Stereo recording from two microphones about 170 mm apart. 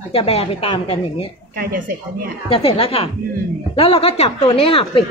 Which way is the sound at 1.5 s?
55° right (ahead or behind).